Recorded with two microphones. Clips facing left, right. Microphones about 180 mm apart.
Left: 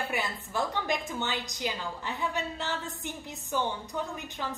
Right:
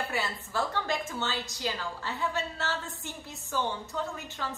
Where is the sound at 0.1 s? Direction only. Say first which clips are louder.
Even; 15° left (ahead or behind).